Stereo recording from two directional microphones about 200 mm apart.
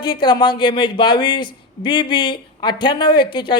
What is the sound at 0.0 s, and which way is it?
A man's voice, 25° left (ahead or behind).